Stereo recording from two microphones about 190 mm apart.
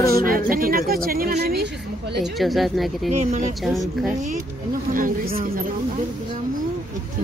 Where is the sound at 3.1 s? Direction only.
35° right (ahead or behind).